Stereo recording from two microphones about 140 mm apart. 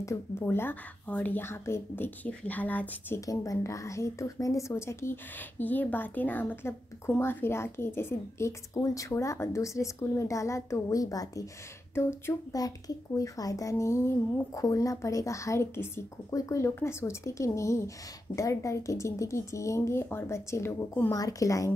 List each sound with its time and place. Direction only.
0.0 s speech: 20° left (ahead or behind)
3.2 s speech: 25° left (ahead or behind)